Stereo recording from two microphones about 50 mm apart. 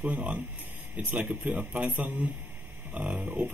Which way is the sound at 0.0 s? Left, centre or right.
Right.